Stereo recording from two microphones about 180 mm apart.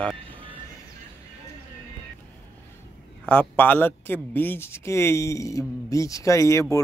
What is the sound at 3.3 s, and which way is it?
Speech, 10° left (ahead or behind).